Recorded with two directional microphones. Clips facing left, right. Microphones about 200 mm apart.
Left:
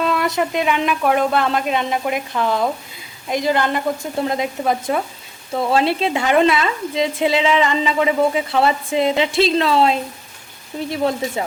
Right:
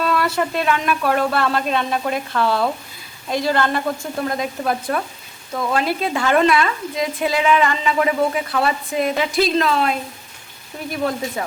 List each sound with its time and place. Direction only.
0.0 s speech: 20° left (ahead or behind)
5.5 s speech: 30° left (ahead or behind)